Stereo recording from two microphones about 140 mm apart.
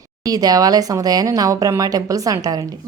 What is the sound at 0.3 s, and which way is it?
A woman's voice, 25° right (ahead or behind).